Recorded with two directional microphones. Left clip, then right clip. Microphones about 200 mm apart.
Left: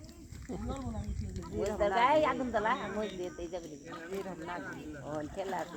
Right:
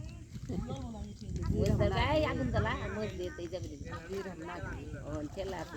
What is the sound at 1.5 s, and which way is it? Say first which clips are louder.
Speech: left 3 dB; 65° right (ahead or behind).